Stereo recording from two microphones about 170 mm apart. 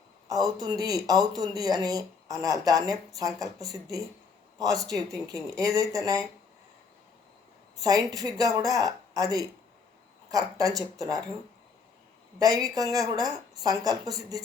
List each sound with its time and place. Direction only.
0.3 s speech: 20° right (ahead or behind)
7.8 s speech: 20° right (ahead or behind)
12.4 s speech: 20° right (ahead or behind)